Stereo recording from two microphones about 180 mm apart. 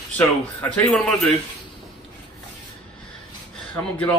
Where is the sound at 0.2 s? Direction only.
10° left (ahead or behind).